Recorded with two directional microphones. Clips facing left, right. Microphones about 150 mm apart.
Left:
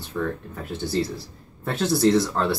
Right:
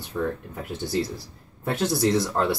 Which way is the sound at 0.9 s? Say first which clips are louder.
Left 1 dB; 10° right (ahead or behind).